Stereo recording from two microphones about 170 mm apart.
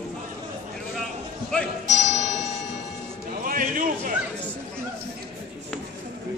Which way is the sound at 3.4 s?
55° right (ahead or behind).